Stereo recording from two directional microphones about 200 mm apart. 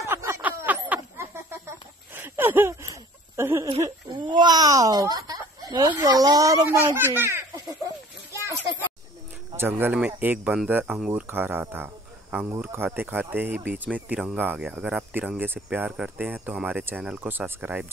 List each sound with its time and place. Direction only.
0.1 s a sound: 10° right (ahead or behind)
3.8 s speech: 20° right (ahead or behind)
9.5 s speech: 10° right (ahead or behind)